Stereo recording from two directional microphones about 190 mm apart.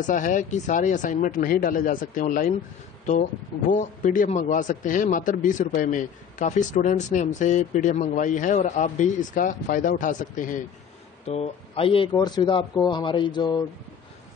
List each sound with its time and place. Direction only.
0.0 s speech: 40° left (ahead or behind)
3.7 s a man's voice: 45° left (ahead or behind)
11.2 s speech: 30° left (ahead or behind)